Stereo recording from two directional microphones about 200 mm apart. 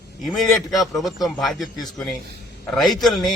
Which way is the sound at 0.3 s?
Centre (ahead or behind).